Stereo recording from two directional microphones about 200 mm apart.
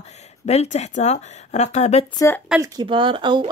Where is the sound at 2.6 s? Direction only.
25° right (ahead or behind).